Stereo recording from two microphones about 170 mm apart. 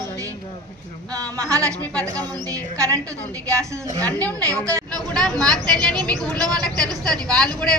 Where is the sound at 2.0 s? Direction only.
20° right (ahead or behind).